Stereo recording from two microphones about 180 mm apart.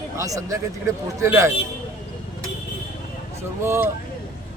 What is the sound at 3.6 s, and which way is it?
Speech, 15° right (ahead or behind).